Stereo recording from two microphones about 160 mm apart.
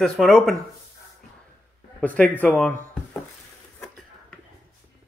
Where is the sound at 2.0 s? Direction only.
10° left (ahead or behind).